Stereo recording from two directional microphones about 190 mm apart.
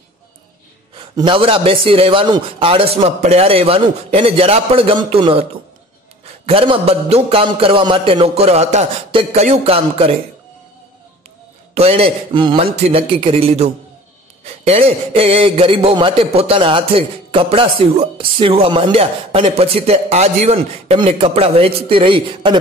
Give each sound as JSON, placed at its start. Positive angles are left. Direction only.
{"t": 1.1, "sound": "a man's voice", "side_deg": -25}
{"t": 11.7, "sound": "a man's voice", "side_deg": -30}